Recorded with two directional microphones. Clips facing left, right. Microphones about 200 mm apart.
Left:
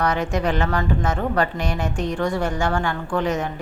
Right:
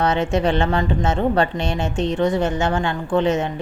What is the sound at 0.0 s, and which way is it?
Speech, 25° right (ahead or behind).